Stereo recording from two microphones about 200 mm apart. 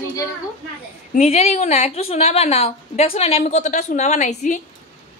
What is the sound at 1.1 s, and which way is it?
A woman's voice, 35° left (ahead or behind).